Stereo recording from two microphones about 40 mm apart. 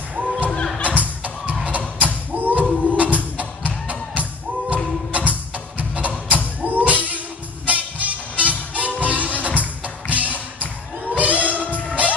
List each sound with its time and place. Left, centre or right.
0.2 s music: right
2.0 s a sound: right
2.9 s music: right
11.1 s singing: right
11.7 s music: right